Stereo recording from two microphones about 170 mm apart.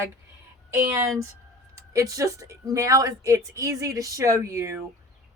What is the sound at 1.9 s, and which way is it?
Speech, 20° right (ahead or behind).